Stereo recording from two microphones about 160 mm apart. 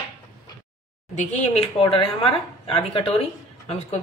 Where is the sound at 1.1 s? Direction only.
45° left (ahead or behind).